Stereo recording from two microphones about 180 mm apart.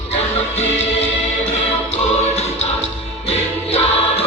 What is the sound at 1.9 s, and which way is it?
Music, 35° left (ahead or behind).